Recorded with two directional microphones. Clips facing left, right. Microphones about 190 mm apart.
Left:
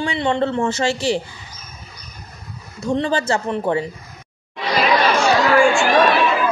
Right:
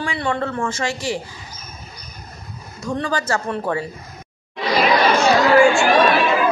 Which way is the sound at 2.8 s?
25° left (ahead or behind).